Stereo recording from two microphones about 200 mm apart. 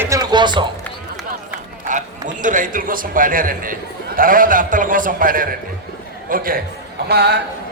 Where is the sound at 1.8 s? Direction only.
40° right (ahead or behind).